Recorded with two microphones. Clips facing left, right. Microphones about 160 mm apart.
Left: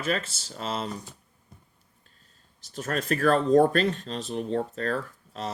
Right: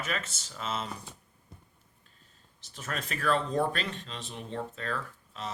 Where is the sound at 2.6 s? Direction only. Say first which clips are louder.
Left 8 dB; 40° left (ahead or behind).